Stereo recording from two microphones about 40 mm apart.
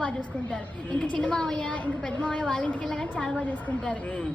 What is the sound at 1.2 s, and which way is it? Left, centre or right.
Speech, centre.